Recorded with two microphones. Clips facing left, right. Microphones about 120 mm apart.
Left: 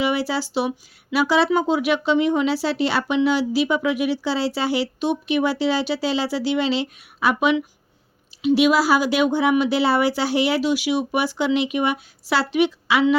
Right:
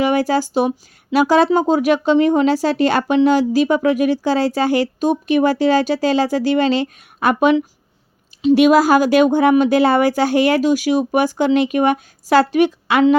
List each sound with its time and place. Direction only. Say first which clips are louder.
0.0 s a woman's voice: right 6 dB; 45° right (ahead or behind)